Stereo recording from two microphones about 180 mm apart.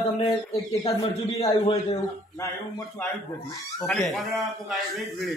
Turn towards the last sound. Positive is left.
turn(degrees=0)  # may be behind; listen again after turning